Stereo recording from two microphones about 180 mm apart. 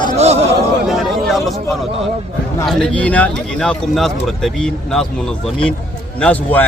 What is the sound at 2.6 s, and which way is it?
A man's voice, 5° left (ahead or behind).